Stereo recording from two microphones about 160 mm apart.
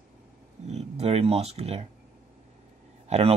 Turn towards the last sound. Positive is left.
turn(degrees=-40)  # may be behind; listen again after turning